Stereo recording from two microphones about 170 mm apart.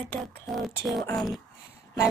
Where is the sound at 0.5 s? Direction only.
Centre (ahead or behind).